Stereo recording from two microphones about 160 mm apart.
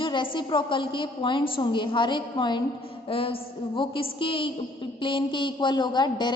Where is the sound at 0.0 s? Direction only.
30° left (ahead or behind).